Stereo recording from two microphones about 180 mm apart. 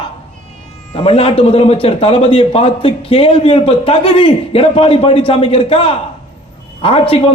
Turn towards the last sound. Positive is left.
turn(degrees=30)  # may be behind; listen again after turning